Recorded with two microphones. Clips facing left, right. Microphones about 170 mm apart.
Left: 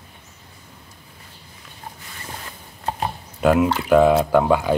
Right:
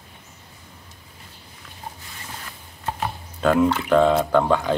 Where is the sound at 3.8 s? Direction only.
10° left (ahead or behind).